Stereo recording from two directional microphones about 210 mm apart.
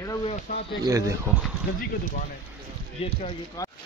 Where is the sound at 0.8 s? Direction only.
15° right (ahead or behind).